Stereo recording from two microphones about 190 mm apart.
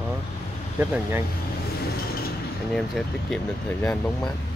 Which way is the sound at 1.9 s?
50° left (ahead or behind).